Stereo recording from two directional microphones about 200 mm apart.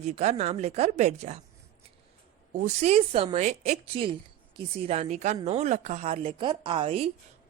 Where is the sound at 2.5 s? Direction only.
30° right (ahead or behind).